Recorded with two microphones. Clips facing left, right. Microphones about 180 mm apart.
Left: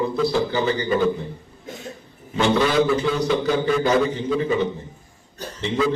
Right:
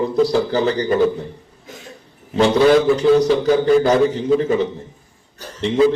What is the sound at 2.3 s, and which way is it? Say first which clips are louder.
A man's voice: right 6 dB; 35° right (ahead or behind).